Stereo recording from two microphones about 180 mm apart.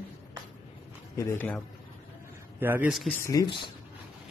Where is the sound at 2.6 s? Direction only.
10° right (ahead or behind).